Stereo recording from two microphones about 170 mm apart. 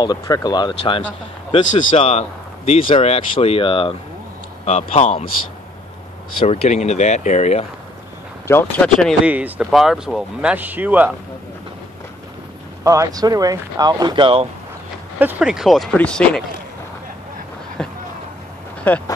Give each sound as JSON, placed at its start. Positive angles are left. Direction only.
{"t": 0.0, "sound": "speech", "side_deg": 25}
{"t": 6.4, "sound": "speech", "side_deg": 40}
{"t": 8.5, "sound": "speech", "side_deg": 10}
{"t": 9.2, "sound": "speech", "side_deg": -5}
{"t": 12.8, "sound": "speech", "side_deg": -20}
{"t": 15.1, "sound": "speech", "side_deg": -10}
{"t": 17.8, "sound": "a sound", "side_deg": 5}
{"t": 18.9, "sound": "speech", "side_deg": 10}